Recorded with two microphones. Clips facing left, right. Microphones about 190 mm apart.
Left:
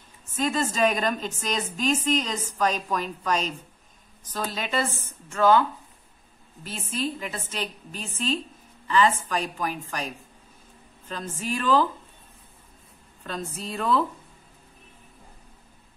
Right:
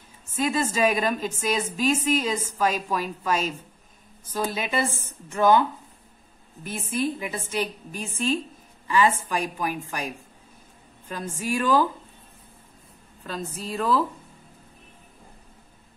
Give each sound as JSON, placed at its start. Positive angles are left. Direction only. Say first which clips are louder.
{"t": 0.4, "sound": "a woman's voice", "louder": "right 1 dB", "side_deg": -10}
{"t": 13.2, "sound": "a woman's voice", "louder": "right 1 dB", "side_deg": 0}